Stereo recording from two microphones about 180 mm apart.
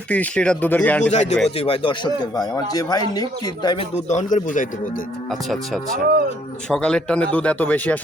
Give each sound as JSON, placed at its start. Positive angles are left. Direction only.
{"t": 0.1, "sound": "speech", "side_deg": 5}
{"t": 1.1, "sound": "speech", "side_deg": 40}
{"t": 4.1, "sound": "a man's voice", "side_deg": 40}
{"t": 5.3, "sound": "speech", "side_deg": 0}